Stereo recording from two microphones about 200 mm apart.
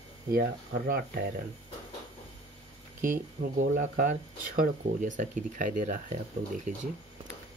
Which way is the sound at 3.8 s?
45° right (ahead or behind).